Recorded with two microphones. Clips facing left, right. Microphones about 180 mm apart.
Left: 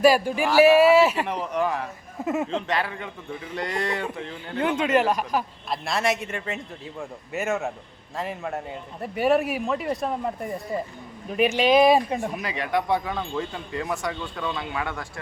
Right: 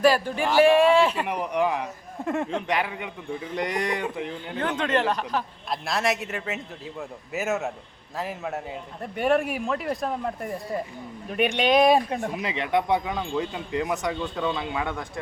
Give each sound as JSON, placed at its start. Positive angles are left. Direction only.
{"t": 0.0, "sound": "speech", "side_deg": 10}
{"t": 1.3, "sound": "speech", "side_deg": -15}
{"t": 2.2, "sound": "a man's voice", "side_deg": 5}
{"t": 2.5, "sound": "speech", "side_deg": -15}
{"t": 4.5, "sound": "a man's voice", "side_deg": 10}
{"t": 12.3, "sound": "speech", "side_deg": -20}